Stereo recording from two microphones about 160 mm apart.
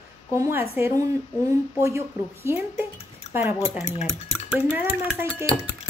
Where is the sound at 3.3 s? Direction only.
15° right (ahead or behind).